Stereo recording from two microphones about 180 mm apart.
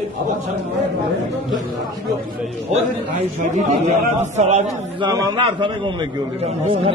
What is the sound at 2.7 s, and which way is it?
A man's voice, 40° right (ahead or behind).